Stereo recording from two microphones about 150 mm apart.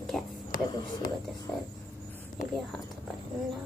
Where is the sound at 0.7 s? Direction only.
25° left (ahead or behind).